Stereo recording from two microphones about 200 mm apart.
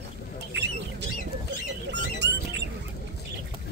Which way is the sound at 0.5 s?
60° right (ahead or behind).